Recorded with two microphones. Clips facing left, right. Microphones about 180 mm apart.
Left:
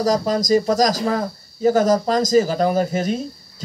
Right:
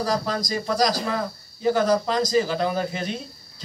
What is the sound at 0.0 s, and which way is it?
Speech, 45° left (ahead or behind).